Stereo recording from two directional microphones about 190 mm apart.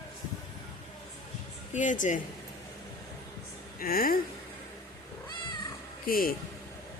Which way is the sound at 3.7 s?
50° left (ahead or behind).